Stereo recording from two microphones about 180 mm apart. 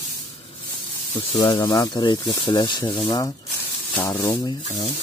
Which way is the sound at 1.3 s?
25° left (ahead or behind).